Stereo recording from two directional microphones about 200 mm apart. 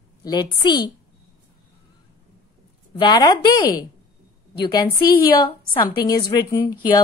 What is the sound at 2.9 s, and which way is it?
Speech, 20° left (ahead or behind).